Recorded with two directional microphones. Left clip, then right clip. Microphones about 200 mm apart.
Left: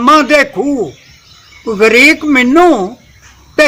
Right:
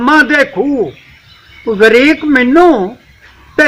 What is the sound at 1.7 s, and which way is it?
A man's voice, 40° left (ahead or behind).